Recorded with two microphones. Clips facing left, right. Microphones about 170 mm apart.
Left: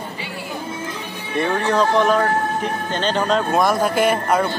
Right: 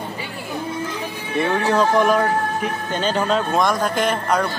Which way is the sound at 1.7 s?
10° right (ahead or behind).